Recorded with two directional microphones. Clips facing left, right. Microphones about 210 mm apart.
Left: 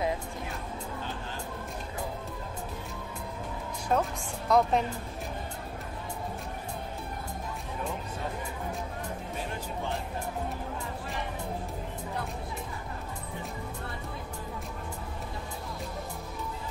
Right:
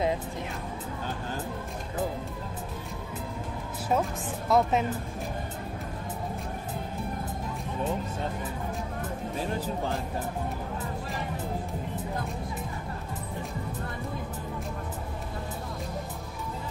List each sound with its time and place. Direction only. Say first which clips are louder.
3.9 s a woman's voice: right 1 dB; 5° right (ahead or behind)